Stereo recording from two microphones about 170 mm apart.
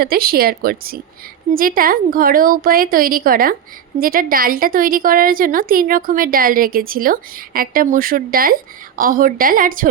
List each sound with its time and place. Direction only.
0.0 s a woman's voice: 60° right (ahead or behind)